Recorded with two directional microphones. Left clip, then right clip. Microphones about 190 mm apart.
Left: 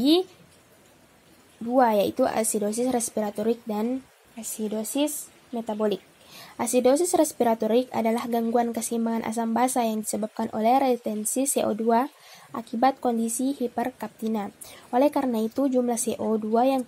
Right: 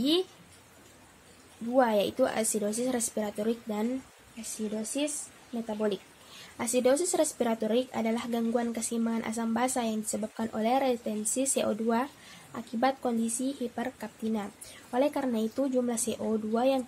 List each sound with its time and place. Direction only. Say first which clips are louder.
1.8 s speech: left 4 dB; 35° left (ahead or behind)
4.8 s speech: left 7 dB; 40° left (ahead or behind)